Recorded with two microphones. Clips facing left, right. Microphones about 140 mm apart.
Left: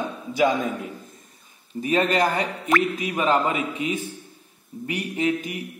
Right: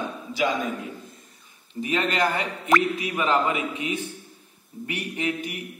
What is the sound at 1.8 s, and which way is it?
A man's voice, 40° left (ahead or behind).